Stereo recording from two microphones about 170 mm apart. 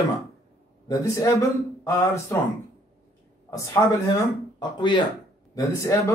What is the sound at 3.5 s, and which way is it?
Speech, 20° left (ahead or behind).